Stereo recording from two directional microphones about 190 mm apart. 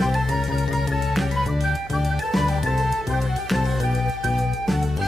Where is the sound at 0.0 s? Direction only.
Centre (ahead or behind).